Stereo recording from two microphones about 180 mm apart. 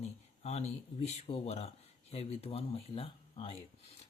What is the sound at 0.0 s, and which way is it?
Speech, 35° left (ahead or behind).